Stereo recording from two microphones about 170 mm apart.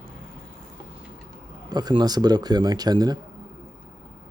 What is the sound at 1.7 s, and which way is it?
A man's voice, 25° right (ahead or behind).